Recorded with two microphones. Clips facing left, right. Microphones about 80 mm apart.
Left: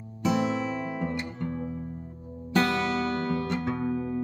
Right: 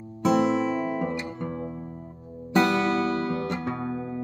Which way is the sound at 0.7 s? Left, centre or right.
Centre.